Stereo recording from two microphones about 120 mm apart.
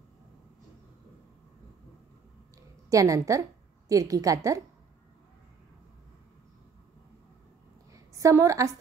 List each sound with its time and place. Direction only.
2.9 s a woman's voice: 30° right (ahead or behind)
8.1 s a woman's voice: 25° right (ahead or behind)